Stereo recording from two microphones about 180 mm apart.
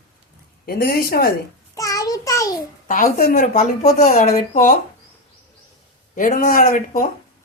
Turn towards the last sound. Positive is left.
turn(degrees=50)  # may be behind; listen again after turning